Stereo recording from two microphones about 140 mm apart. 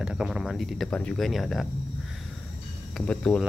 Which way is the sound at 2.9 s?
5° left (ahead or behind).